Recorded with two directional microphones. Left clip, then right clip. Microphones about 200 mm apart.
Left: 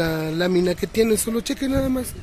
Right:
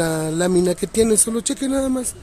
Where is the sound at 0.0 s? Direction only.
15° right (ahead or behind).